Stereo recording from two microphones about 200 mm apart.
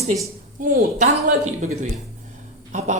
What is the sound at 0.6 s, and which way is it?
Speech, 40° right (ahead or behind).